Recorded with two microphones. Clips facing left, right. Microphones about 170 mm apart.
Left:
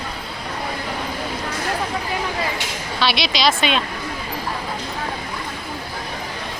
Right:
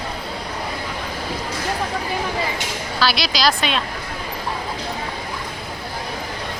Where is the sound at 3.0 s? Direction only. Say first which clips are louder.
Even; centre (ahead or behind).